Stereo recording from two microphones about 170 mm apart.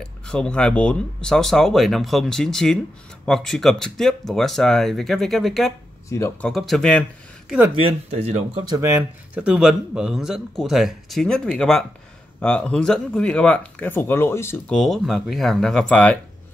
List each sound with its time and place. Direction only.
0.0 s a man's voice: 5° left (ahead or behind)
6.0 s speech: 15° left (ahead or behind)
6.4 s a man's voice: centre (ahead or behind)
7.8 s speech: 40° right (ahead or behind)
8.6 s a man's voice: 20° right (ahead or behind); by 14.8 s 15° left (ahead or behind)
14.8 s a man's voice: centre (ahead or behind)